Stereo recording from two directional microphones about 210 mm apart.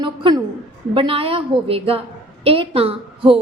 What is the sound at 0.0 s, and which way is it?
A woman's voice, 25° right (ahead or behind).